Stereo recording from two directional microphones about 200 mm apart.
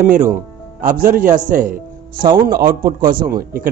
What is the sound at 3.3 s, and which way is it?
Speech, 45° right (ahead or behind).